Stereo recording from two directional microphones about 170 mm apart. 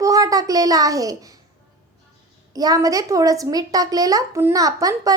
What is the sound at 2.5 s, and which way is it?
A woman's voice, 20° right (ahead or behind).